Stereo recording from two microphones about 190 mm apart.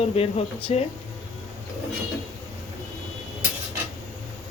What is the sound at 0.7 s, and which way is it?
Speech, 30° left (ahead or behind).